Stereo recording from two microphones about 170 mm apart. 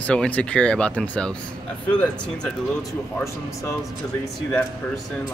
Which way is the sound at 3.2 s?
15° left (ahead or behind).